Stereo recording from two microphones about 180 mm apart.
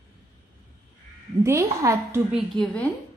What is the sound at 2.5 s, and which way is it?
Speech, 5° left (ahead or behind).